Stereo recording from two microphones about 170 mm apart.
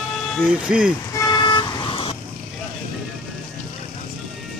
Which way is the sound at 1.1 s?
20° left (ahead or behind).